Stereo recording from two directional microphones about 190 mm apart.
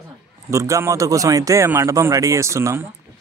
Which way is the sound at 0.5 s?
15° right (ahead or behind).